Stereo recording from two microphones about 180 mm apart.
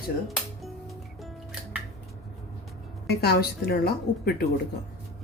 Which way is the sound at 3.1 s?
60° left (ahead or behind).